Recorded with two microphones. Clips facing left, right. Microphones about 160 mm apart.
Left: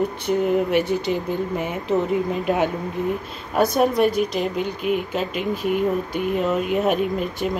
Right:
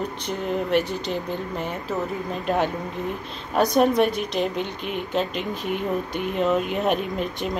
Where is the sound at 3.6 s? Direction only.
Centre (ahead or behind).